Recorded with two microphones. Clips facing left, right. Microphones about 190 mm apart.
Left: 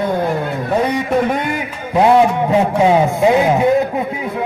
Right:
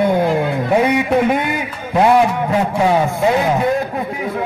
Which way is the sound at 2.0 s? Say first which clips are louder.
Left 1 dB; 20° left (ahead or behind).